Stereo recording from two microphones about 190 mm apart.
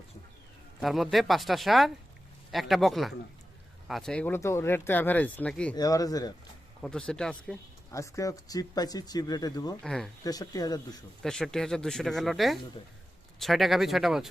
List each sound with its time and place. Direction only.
0.8 s speech: centre (ahead or behind)
5.7 s speech: 20° left (ahead or behind)
6.8 s speech: 5° left (ahead or behind)
7.9 s speech: 15° left (ahead or behind)
9.8 s speech: 5° left (ahead or behind)
10.2 s speech: 20° left (ahead or behind)
11.2 s speech: centre (ahead or behind)